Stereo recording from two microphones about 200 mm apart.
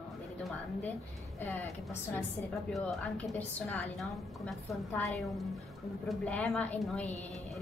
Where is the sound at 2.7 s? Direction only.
5° left (ahead or behind).